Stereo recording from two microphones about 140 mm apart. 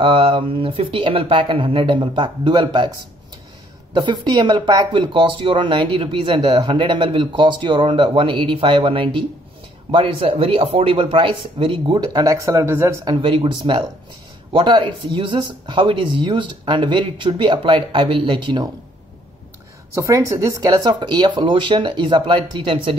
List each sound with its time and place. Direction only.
0.0 s speech: 40° right (ahead or behind)
3.9 s speech: 30° right (ahead or behind)
13.0 s speech: 35° right (ahead or behind)
19.9 s speech: 20° right (ahead or behind)